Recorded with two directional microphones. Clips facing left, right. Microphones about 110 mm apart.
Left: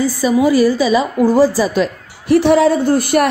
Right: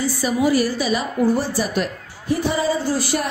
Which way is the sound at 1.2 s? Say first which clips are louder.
Left 3 dB; 90° left.